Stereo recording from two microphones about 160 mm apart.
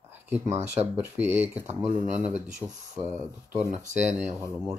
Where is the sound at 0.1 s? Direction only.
10° right (ahead or behind).